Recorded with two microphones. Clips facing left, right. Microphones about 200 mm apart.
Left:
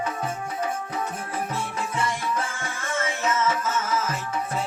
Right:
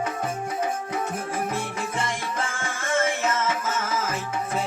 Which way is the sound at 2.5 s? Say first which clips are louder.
Right 3 dB; 50° right (ahead or behind).